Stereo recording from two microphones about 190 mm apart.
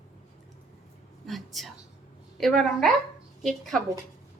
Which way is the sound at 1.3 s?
Centre (ahead or behind).